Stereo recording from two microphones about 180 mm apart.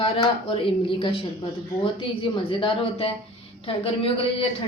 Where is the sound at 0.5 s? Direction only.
30° left (ahead or behind).